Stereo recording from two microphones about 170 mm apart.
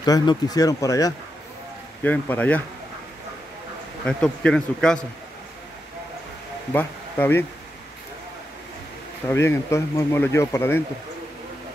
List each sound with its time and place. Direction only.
0.0 s speech: 25° left (ahead or behind)
2.0 s speech: 10° left (ahead or behind)
4.0 s speech: 5° left (ahead or behind)
6.7 s speech: 10° left (ahead or behind)
9.3 s speech: 15° left (ahead or behind)